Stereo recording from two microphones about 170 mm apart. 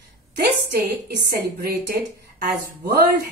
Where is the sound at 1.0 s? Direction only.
65° right (ahead or behind).